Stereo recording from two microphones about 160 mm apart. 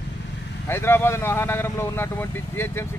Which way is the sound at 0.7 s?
15° left (ahead or behind).